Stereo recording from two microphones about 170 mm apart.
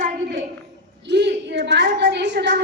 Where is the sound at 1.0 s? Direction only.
90° right.